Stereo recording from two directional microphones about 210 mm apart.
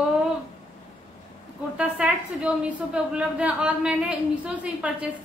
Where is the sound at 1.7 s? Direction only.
5° right (ahead or behind).